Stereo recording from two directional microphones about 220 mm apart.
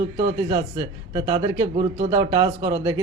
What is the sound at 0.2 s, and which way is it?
A man's voice, 20° right (ahead or behind).